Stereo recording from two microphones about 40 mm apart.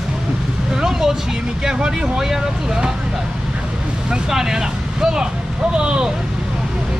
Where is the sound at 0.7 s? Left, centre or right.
Centre.